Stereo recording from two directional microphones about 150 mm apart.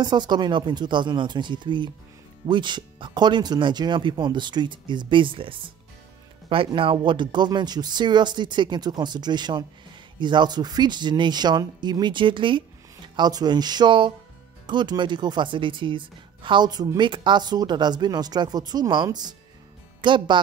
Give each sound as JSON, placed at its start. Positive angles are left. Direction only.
{"t": 0.0, "sound": "a woman's voice", "side_deg": -30}